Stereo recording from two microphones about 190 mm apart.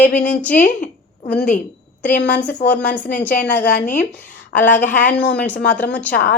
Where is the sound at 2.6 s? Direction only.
55° left (ahead or behind).